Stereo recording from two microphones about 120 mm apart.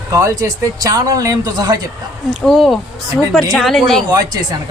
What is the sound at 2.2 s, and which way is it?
Speech, centre (ahead or behind).